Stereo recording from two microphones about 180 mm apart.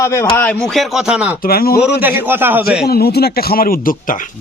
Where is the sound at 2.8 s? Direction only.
60° left (ahead or behind).